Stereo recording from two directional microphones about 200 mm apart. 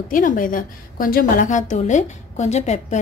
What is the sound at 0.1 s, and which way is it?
A woman's voice, 45° left (ahead or behind).